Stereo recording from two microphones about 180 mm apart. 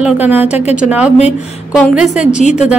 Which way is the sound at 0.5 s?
40° left (ahead or behind).